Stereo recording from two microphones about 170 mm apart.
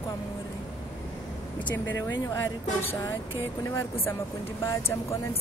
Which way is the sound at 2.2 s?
15° left (ahead or behind).